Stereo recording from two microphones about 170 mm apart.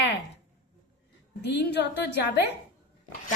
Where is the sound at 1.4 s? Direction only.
80° left.